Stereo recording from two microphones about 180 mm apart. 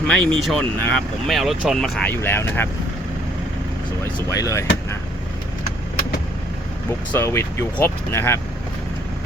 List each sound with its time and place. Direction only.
0.1 s speech: 5° left (ahead or behind)
4.0 s speech: 15° left (ahead or behind)
7.1 s speech: 15° left (ahead or behind)